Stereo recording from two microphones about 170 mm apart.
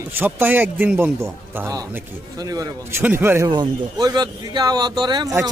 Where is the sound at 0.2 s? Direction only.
10° right (ahead or behind).